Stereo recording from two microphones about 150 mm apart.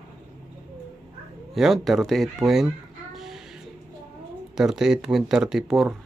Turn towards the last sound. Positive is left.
turn(degrees=0)  # may be behind; listen again after turning